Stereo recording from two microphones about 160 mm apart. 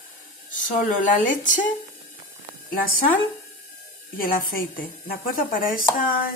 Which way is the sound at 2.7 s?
65° left (ahead or behind).